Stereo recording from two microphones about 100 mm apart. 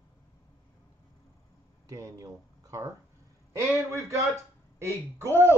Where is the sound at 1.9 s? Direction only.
35° right (ahead or behind).